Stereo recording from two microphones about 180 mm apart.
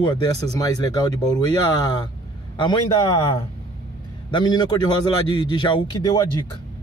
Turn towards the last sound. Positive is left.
turn(degrees=20)  # may be behind; listen again after turning